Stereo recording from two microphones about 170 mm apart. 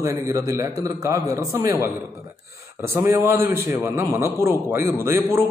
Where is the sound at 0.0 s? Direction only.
20° right (ahead or behind).